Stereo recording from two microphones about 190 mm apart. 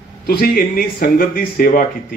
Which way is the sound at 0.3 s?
55° left (ahead or behind).